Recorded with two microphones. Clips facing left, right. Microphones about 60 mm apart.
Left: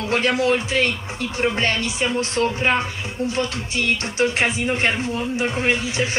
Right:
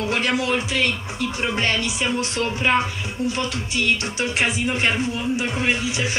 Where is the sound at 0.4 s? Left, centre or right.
Left.